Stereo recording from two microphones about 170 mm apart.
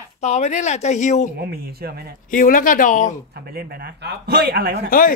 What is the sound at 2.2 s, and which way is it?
Speech, 55° left (ahead or behind).